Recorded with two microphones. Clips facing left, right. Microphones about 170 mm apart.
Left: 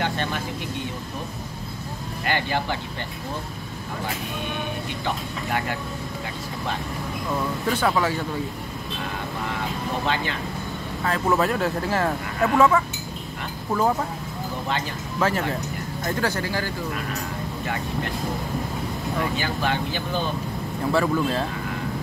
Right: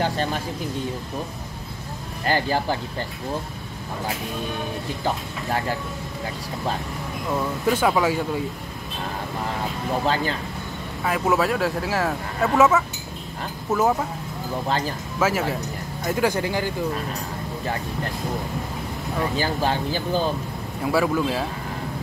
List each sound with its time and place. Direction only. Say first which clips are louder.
0.0 s vehicle: right 2 dB; 35° right (ahead or behind)
2.2 s speech: right 3 dB; 35° right (ahead or behind)
5.0 s speech: right 3 dB; 35° right (ahead or behind)
7.6 s speech: right 3 dB; 10° right (ahead or behind)
10.0 s speech: right 3 dB; 40° right (ahead or behind)
11.1 s speech: right 1 dB; 10° right (ahead or behind)
15.1 s speech: right 1 dB; 5° right (ahead or behind)
19.3 s speech: right 2 dB; 35° right (ahead or behind)
20.9 s speech: right 1 dB; 5° right (ahead or behind)